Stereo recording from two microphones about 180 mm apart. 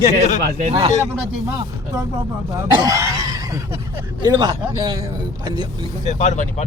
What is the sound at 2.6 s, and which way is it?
Speech, 20° right (ahead or behind).